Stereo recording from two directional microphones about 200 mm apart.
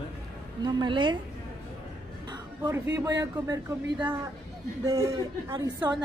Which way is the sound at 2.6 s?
15° right (ahead or behind).